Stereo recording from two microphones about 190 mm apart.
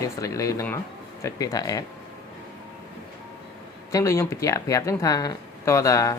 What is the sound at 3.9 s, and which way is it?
Speech, 15° left (ahead or behind).